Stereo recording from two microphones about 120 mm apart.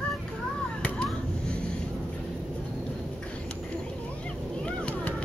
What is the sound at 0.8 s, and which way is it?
Vehicle, 10° left (ahead or behind).